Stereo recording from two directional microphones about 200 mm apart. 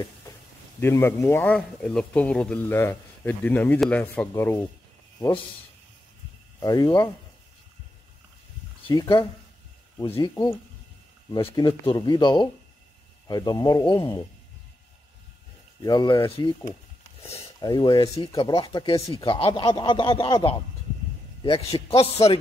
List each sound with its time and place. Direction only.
0.7 s speech: 10° left (ahead or behind)
6.6 s speech: 20° left (ahead or behind)
8.8 s speech: 20° left (ahead or behind)
10.3 s speech: 15° left (ahead or behind)
15.8 s speech: 20° left (ahead or behind)
17.6 s speech: 20° left (ahead or behind)